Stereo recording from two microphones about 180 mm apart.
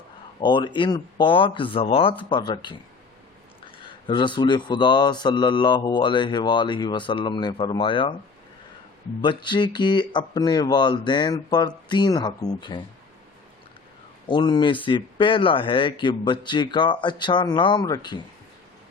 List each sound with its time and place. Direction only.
0.3 s speech: 25° left (ahead or behind)
4.0 s speech: 25° left (ahead or behind)
9.2 s speech: 25° left (ahead or behind)
14.3 s speech: 25° left (ahead or behind)